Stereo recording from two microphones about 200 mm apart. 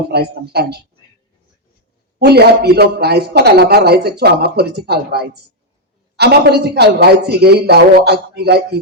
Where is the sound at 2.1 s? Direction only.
55° right (ahead or behind).